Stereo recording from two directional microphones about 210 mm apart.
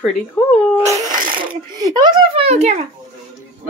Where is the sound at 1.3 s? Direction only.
20° right (ahead or behind).